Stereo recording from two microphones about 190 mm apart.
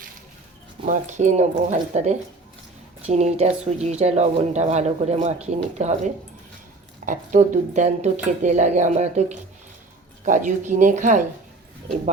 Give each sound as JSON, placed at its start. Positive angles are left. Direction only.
{"t": 0.9, "sound": "speech", "side_deg": -40}
{"t": 7.0, "sound": "speech", "side_deg": -45}